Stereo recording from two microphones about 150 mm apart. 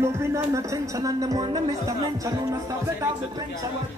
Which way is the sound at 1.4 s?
25° right (ahead or behind).